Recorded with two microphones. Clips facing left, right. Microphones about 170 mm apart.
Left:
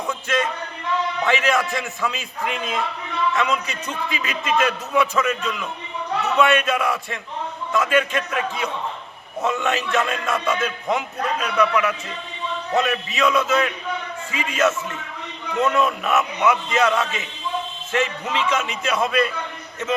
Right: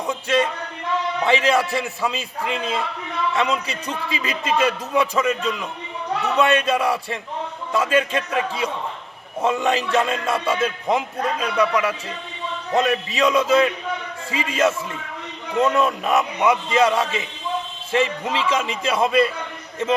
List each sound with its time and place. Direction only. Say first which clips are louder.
0.1 s a sound: right 4 dB; 30° right (ahead or behind)
1.2 s a man's voice: right 3 dB; 30° right (ahead or behind)
12.7 s a man's voice: right 2 dB; 35° right (ahead or behind)